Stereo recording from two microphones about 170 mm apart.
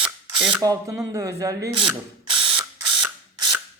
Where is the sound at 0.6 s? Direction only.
20° right (ahead or behind).